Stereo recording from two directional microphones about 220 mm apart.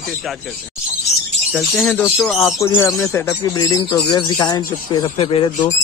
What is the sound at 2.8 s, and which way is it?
Speech, 15° left (ahead or behind).